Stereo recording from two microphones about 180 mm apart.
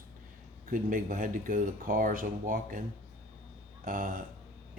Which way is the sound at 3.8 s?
50° right (ahead or behind).